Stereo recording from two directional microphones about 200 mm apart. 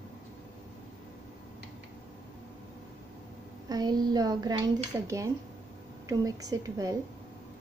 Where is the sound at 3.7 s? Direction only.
20° right (ahead or behind).